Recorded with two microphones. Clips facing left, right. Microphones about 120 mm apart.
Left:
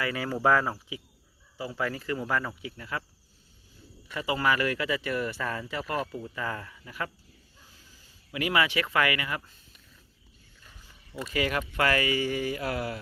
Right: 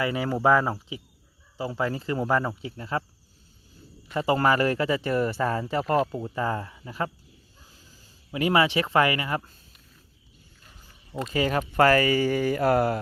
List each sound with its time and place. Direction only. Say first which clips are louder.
0.0 s speech: right 3 dB; 20° right (ahead or behind)
4.1 s speech: right 5 dB; 40° right (ahead or behind)
11.1 s speech: right 4 dB; 30° right (ahead or behind); by 13.0 s 45° right (ahead or behind)